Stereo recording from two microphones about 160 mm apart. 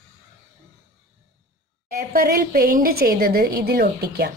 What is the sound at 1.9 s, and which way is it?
A woman's voice, 65° right (ahead or behind).